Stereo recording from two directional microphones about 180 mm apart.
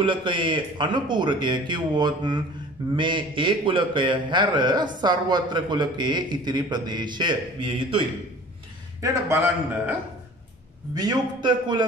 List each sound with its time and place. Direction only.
0.0 s mantra: 30° right (ahead or behind)
9.0 s a man's voice: 15° right (ahead or behind)
11.0 s mantra: 25° right (ahead or behind)